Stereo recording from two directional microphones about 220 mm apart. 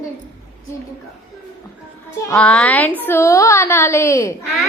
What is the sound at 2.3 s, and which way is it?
A child's voice, 5° left (ahead or behind).